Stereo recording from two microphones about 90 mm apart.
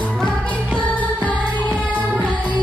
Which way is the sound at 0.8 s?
15° left (ahead or behind).